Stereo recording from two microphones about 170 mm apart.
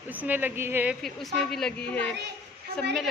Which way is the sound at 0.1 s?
10° right (ahead or behind).